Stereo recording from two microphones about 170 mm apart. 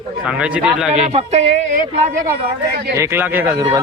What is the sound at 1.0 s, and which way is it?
Speech, 40° right (ahead or behind).